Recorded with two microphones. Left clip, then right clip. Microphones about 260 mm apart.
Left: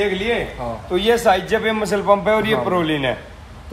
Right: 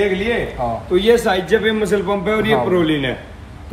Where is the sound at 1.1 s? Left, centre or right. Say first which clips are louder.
Right 1 dB; left.